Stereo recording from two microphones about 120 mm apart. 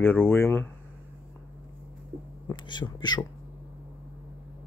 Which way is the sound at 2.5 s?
40° left (ahead or behind).